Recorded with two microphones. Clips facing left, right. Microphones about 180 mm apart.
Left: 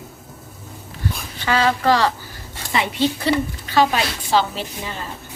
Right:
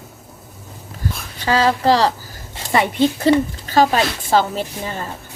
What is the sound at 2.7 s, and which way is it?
A woman's voice, 50° right (ahead or behind).